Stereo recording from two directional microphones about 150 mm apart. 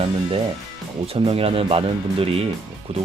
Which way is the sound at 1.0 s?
40° right (ahead or behind).